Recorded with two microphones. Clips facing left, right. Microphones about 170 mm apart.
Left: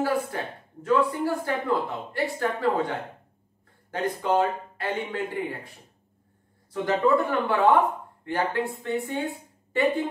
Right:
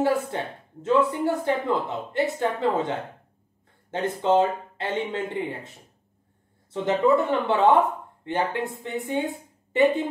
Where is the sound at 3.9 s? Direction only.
25° right (ahead or behind).